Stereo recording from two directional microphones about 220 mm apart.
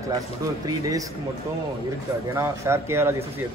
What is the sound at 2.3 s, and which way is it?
Speech, 10° right (ahead or behind).